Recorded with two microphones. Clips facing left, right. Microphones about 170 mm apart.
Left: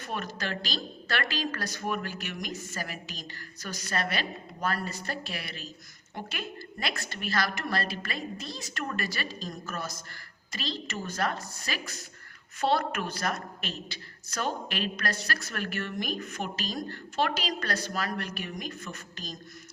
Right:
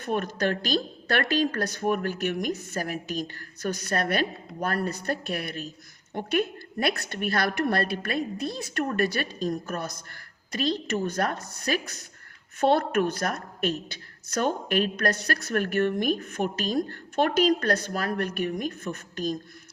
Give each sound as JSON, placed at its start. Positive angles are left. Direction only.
{"t": 0.0, "sound": "a woman's voice", "side_deg": -55}
{"t": 8.8, "sound": "speech", "side_deg": -40}
{"t": 9.0, "sound": "a woman's voice", "side_deg": -55}